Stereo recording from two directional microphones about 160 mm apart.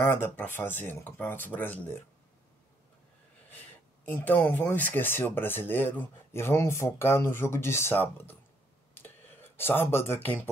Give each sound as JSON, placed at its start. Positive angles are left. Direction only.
{"t": 0.0, "sound": "speech", "side_deg": 15}
{"t": 4.1, "sound": "speech", "side_deg": 10}
{"t": 8.9, "sound": "a sound", "side_deg": 15}